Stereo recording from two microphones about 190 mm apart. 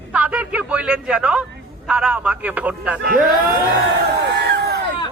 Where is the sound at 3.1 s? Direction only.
50° right (ahead or behind).